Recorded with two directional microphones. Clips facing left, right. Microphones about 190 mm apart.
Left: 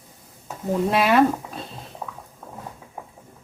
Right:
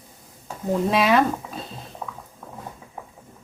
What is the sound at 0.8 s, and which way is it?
Speech, centre (ahead or behind).